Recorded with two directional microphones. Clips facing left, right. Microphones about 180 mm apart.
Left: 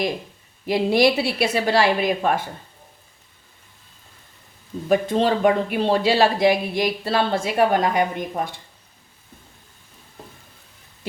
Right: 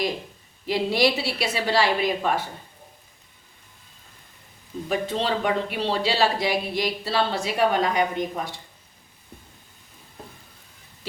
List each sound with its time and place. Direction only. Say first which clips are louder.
0.6 s speech: left 4 dB; 50° left (ahead or behind)
4.9 s speech: left 6 dB; 50° left (ahead or behind)